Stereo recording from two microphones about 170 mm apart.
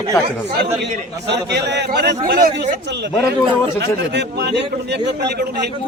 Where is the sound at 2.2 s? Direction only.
65° right (ahead or behind); by 3.1 s 90° right.